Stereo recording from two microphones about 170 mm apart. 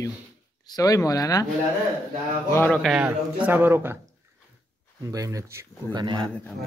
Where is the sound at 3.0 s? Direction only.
10° right (ahead or behind).